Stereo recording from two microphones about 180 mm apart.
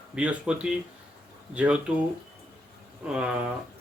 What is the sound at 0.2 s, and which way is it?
Speech, 5° right (ahead or behind).